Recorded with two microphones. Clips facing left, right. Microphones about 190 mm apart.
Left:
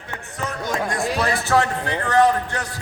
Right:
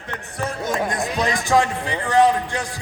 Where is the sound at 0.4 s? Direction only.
25° right (ahead or behind).